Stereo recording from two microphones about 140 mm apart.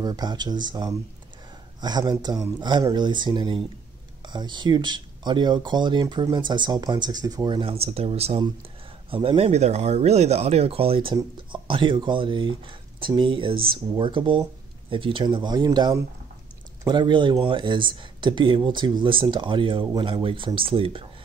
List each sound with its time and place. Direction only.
0.0 s speech: 30° right (ahead or behind)
7.7 s speech: 45° right (ahead or behind)